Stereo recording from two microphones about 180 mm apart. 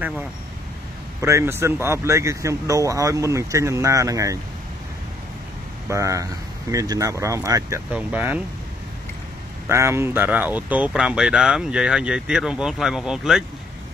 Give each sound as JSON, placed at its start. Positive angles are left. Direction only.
{"t": 0.0, "sound": "speech", "side_deg": -10}
{"t": 5.9, "sound": "speech", "side_deg": -15}
{"t": 9.7, "sound": "speech", "side_deg": -15}